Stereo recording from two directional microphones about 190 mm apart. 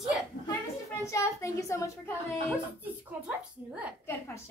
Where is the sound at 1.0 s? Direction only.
15° left (ahead or behind).